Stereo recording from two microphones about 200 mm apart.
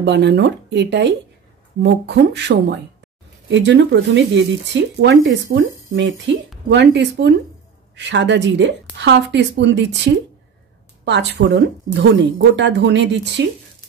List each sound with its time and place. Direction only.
0.0 s speech: 60° right (ahead or behind)
5.5 s speech: 60° right (ahead or behind)